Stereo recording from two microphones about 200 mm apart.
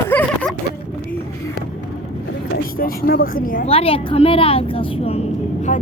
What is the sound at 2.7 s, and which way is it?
Speech, 45° left (ahead or behind).